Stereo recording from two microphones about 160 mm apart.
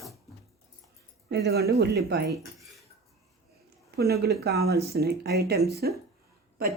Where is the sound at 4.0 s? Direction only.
90° right.